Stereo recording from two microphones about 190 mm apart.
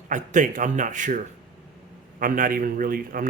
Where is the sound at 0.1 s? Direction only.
45° right (ahead or behind).